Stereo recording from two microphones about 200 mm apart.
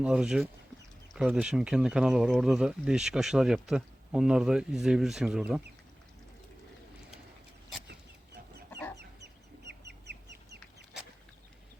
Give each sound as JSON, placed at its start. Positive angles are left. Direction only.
{"t": 0.0, "sound": "speech", "side_deg": -5}
{"t": 9.6, "sound": "chicken", "side_deg": -55}